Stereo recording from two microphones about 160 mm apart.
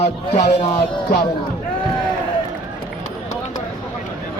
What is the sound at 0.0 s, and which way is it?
Speech, 40° left (ahead or behind).